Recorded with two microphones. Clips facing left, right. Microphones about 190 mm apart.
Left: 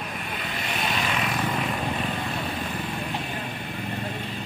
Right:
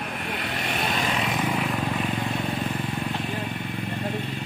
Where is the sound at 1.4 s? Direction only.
10° right (ahead or behind).